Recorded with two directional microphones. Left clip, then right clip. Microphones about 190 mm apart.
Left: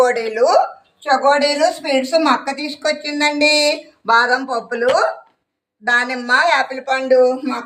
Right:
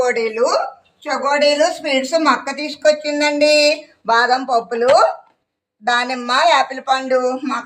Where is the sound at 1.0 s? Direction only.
Centre (ahead or behind).